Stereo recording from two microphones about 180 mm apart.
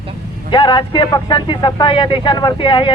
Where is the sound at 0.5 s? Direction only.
25° left (ahead or behind).